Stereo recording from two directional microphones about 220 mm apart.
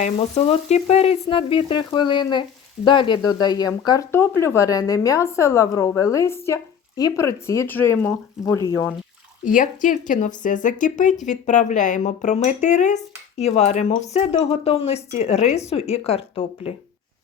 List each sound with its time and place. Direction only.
0.0 s frying: 25° left (ahead or behind)
2.8 s speech: 20° left (ahead or behind)
9.4 s speech: 35° left (ahead or behind)
14.3 s frying: 25° left (ahead or behind)